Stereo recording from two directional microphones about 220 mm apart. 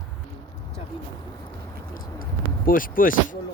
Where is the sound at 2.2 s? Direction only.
40° left (ahead or behind).